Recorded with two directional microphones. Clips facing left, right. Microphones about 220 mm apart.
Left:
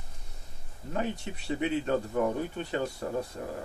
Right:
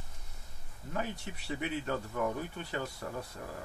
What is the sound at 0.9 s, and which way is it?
A man's voice, 25° left (ahead or behind).